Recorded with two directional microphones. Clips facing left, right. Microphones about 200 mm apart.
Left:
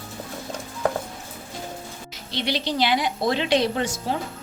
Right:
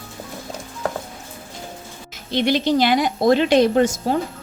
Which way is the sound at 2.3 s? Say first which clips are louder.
Right 8 dB; 50° right (ahead or behind).